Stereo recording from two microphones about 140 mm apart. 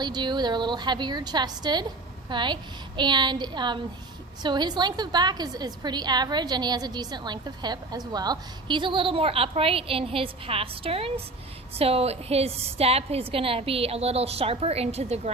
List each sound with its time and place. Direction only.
0.0 s a woman's voice: 30° right (ahead or behind); by 15.3 s 50° right (ahead or behind)